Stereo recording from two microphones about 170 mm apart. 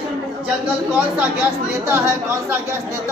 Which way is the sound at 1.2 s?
10° right (ahead or behind).